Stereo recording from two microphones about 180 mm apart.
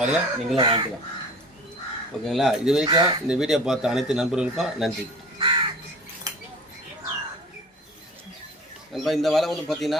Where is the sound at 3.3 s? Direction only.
5° right (ahead or behind).